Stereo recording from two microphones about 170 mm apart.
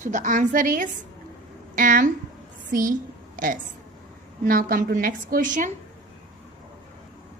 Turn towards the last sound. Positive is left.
turn(degrees=-50)  # may be behind; listen again after turning